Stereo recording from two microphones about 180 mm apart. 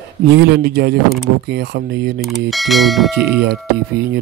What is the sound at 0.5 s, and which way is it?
Speech, 65° right (ahead or behind).